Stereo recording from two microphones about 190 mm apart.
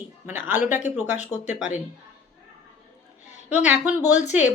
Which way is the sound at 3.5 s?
10° right (ahead or behind).